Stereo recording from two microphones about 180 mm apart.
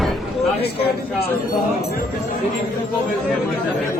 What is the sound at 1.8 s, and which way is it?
Speech, 60° left (ahead or behind).